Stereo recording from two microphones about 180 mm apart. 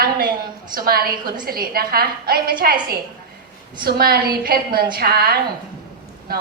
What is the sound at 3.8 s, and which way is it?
A woman's voice, 55° right (ahead or behind).